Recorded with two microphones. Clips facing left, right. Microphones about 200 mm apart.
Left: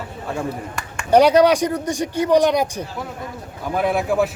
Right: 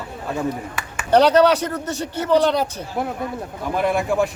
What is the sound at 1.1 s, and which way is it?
Speech, 10° left (ahead or behind).